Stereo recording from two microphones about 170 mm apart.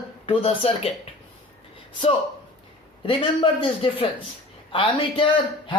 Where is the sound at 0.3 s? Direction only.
35° left (ahead or behind).